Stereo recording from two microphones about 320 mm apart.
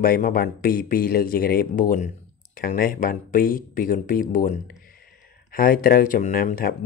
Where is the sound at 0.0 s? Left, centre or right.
Left.